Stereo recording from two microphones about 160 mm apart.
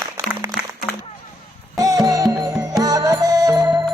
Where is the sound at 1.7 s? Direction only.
20° right (ahead or behind).